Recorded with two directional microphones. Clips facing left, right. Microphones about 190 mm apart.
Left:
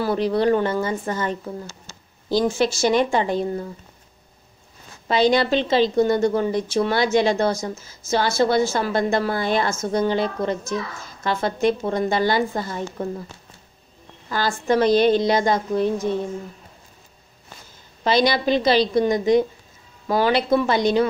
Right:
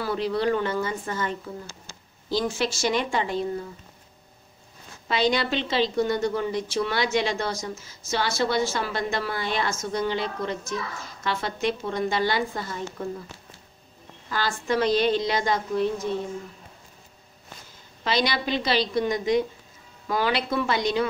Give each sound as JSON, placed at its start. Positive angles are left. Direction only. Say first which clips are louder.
{"t": 0.0, "sound": "a woman's voice", "louder": "left 5 dB", "side_deg": 35}
{"t": 2.4, "sound": "a woman's voice", "louder": "left 7 dB", "side_deg": 45}
{"t": 5.0, "sound": "a woman's voice", "louder": "left 6 dB", "side_deg": 40}
{"t": 14.3, "sound": "a woman's voice", "louder": "left 5 dB", "side_deg": 40}
{"t": 18.0, "sound": "a woman's voice", "louder": "left 7 dB", "side_deg": 40}